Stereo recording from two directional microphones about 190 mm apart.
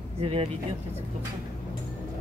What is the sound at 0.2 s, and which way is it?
Speech, 30° right (ahead or behind).